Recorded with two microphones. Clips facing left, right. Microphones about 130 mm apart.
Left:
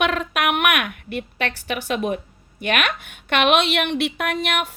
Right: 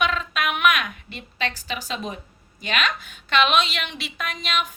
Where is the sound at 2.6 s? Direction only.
60° left (ahead or behind).